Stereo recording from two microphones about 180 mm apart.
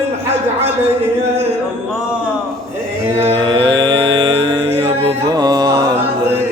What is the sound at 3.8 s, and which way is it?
Music, 20° right (ahead or behind).